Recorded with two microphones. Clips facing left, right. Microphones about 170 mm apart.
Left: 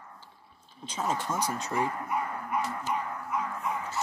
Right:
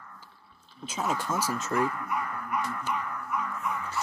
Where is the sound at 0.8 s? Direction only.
10° right (ahead or behind).